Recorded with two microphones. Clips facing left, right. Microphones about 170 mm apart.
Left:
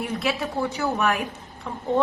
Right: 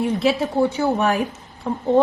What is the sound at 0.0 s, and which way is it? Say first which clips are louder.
A woman's voice: right 7 dB; 30° right (ahead or behind).